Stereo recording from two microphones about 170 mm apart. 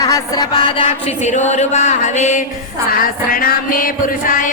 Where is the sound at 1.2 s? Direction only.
45° left (ahead or behind).